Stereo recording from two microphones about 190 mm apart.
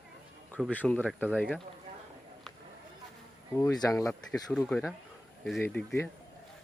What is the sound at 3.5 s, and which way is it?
Speech, 15° left (ahead or behind).